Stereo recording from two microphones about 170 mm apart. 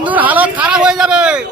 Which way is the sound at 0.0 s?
10° right (ahead or behind).